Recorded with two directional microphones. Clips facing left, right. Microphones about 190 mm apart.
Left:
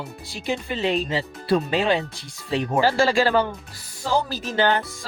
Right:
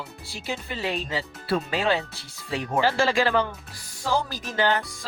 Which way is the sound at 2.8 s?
35° left (ahead or behind).